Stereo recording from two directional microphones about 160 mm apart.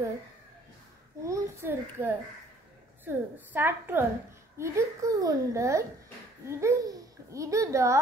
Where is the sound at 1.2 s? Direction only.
15° right (ahead or behind).